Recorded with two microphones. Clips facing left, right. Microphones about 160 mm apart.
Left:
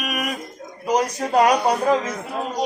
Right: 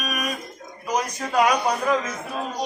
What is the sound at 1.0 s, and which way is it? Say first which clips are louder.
A man's voice: left 3 dB; 35° left (ahead or behind).